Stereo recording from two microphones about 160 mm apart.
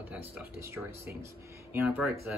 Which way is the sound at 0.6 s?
15° right (ahead or behind).